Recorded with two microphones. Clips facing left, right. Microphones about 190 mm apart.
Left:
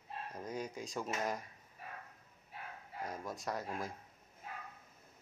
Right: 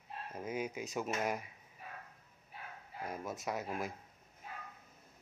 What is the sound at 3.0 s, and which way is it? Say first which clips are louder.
Cutlery: right 1 dB; 5° right (ahead or behind).